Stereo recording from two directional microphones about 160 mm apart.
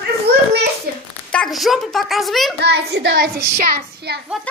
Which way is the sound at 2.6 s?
90° right.